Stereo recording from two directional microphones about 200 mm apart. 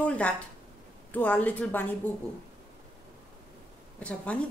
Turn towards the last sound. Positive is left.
turn(degrees=5)  # may be behind; listen again after turning